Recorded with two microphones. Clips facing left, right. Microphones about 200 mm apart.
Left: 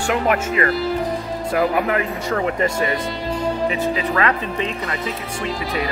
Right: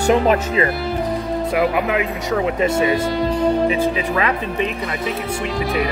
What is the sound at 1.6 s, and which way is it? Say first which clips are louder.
Speech: left 1 dB; 10° right (ahead or behind).